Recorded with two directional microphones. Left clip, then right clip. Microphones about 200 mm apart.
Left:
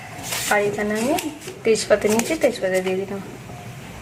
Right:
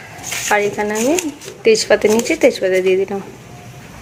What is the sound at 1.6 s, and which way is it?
A woman's voice, 35° right (ahead or behind).